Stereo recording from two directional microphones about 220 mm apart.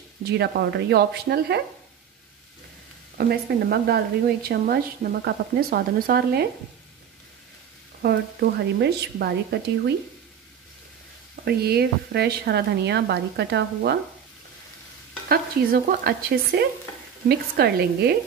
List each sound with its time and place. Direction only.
0.2 s speech: 50° right (ahead or behind)
3.2 s speech: 45° right (ahead or behind)
8.0 s speech: 50° right (ahead or behind)
11.4 s speech: 45° right (ahead or behind)
15.2 s speech: 45° right (ahead or behind)